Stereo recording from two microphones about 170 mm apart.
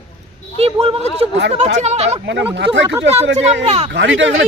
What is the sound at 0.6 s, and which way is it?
Speech, 35° right (ahead or behind).